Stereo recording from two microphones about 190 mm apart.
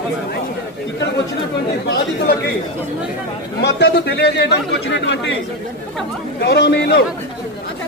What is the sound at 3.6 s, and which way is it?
Speech, 65° left (ahead or behind).